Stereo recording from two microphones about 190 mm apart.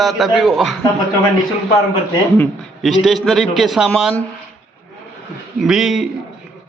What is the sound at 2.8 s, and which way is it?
A man's voice, centre (ahead or behind).